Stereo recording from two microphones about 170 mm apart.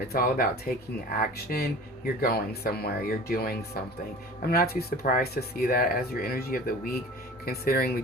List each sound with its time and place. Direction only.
0.1 s speech: 60° left (ahead or behind)